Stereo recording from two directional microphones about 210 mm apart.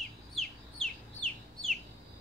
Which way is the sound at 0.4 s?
5° left (ahead or behind).